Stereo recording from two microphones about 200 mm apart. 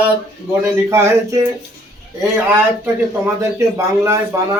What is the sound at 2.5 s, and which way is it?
Speech, 10° right (ahead or behind).